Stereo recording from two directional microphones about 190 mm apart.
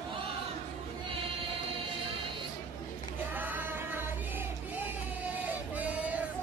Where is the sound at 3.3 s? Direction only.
10° right (ahead or behind).